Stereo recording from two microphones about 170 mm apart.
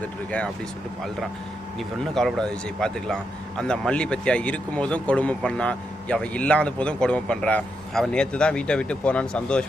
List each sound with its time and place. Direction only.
0.0 s speech: 5° left (ahead or behind)
2.1 s speech: 5° left (ahead or behind)